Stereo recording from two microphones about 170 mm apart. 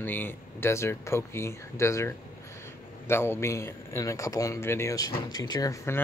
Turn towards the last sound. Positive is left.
turn(degrees=15)  # may be behind; listen again after turning